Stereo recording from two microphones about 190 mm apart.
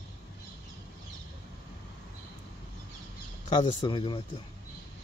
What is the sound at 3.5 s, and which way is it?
Speech, 25° left (ahead or behind).